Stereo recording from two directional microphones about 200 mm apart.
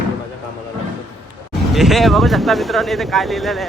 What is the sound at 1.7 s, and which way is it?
Speech, centre (ahead or behind).